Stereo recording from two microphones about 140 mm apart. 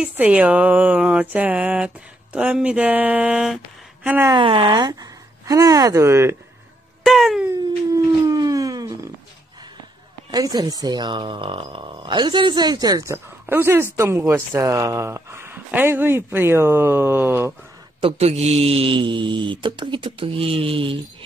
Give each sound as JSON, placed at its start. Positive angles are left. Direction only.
{"t": 0.0, "sound": "speech", "side_deg": -10}
{"t": 4.3, "sound": "speech", "side_deg": -35}
{"t": 7.1, "sound": "wail", "side_deg": 0}
{"t": 7.4, "sound": "dog", "side_deg": -25}
{"t": 10.3, "sound": "speech", "side_deg": -30}
{"t": 18.0, "sound": "speech", "side_deg": -50}